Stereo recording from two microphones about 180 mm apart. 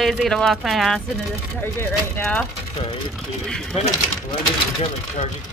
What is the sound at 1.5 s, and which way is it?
Speech, 10° left (ahead or behind).